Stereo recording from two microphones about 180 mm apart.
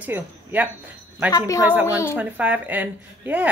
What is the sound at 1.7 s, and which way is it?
Speech, 10° right (ahead or behind).